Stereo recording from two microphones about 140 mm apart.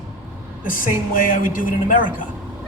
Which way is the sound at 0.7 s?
75° left (ahead or behind).